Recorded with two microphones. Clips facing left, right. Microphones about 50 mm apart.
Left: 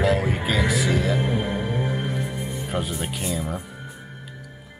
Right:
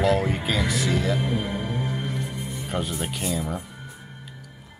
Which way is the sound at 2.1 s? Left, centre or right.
Centre.